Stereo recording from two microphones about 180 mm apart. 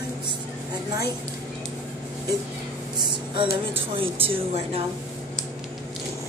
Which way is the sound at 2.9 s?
25° right (ahead or behind).